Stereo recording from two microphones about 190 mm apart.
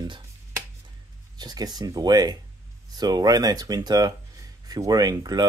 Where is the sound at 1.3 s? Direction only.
20° right (ahead or behind).